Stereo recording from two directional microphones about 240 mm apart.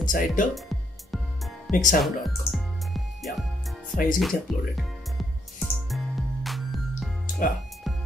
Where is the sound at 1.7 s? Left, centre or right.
Left.